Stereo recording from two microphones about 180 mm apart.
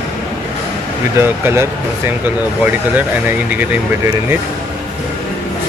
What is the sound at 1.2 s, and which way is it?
Speech, 15° right (ahead or behind).